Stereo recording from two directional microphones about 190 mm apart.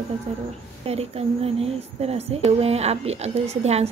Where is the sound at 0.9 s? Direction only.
30° right (ahead or behind).